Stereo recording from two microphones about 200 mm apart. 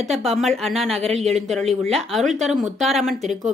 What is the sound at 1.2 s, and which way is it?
Speech, centre (ahead or behind).